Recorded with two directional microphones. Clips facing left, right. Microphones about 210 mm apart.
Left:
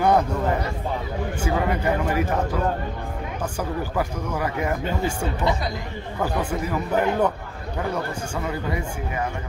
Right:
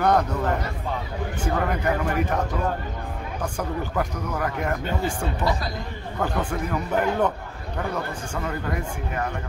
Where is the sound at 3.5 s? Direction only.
5° left (ahead or behind).